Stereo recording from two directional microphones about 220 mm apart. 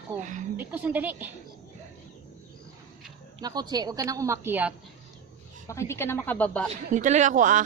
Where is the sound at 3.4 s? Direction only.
20° right (ahead or behind).